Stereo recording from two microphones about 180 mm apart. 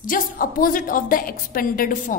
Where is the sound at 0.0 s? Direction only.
50° left (ahead or behind).